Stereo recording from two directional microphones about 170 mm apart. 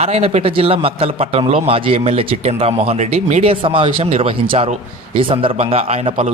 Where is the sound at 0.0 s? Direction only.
35° right (ahead or behind).